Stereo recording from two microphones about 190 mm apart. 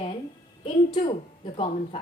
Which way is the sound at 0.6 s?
30° left (ahead or behind).